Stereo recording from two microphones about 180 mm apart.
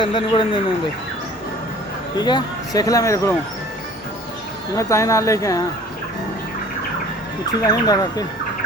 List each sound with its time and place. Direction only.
0.0 s speech: 30° left (ahead or behind)
2.1 s speech: 25° left (ahead or behind)
4.7 s speech: 15° left (ahead or behind)
7.6 s speech: 20° left (ahead or behind)